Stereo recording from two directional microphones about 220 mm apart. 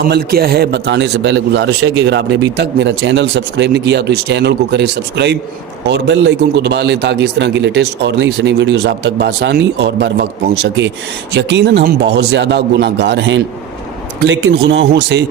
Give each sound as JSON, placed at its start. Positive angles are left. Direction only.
{"t": 0.1, "sound": "a man's voice", "side_deg": -45}